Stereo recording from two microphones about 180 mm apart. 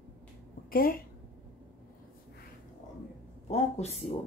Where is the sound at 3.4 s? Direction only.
35° left (ahead or behind).